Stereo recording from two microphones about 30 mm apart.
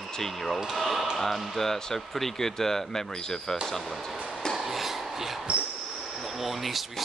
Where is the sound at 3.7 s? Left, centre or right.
Centre.